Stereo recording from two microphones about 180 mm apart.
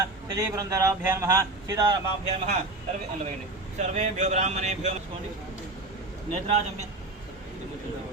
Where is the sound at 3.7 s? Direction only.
40° right (ahead or behind).